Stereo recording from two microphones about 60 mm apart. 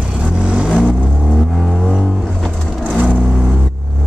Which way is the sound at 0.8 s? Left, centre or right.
Centre.